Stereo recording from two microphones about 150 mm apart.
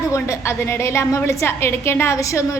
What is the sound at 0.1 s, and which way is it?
A woman's voice, 20° left (ahead or behind).